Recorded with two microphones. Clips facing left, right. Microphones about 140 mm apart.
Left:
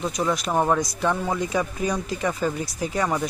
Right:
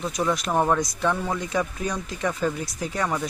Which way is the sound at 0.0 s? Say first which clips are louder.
Left 1 dB; centre (ahead or behind).